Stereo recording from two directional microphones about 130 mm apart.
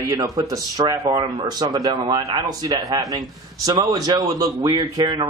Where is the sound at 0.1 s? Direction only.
25° right (ahead or behind).